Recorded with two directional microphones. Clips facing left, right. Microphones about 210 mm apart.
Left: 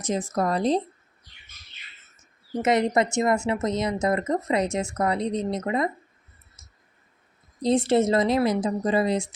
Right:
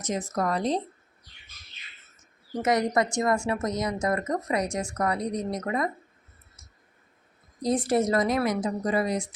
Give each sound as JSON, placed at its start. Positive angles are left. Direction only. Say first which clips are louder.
{"t": 0.0, "sound": "speech", "louder": "left 3 dB", "side_deg": 30}
{"t": 2.6, "sound": "speech", "louder": "left 2 dB", "side_deg": 25}
{"t": 7.6, "sound": "speech", "louder": "left 4 dB", "side_deg": 25}